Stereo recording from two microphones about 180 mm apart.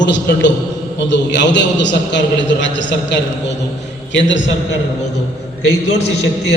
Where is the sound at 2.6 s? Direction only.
90° left.